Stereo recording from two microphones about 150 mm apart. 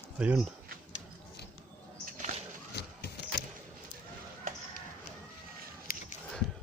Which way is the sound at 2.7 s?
90° left.